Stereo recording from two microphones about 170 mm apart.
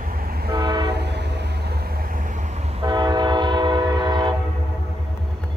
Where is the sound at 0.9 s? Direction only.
80° right.